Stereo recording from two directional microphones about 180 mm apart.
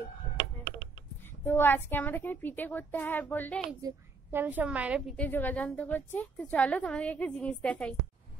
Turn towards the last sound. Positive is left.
turn(degrees=5)  # may be behind; listen again after turning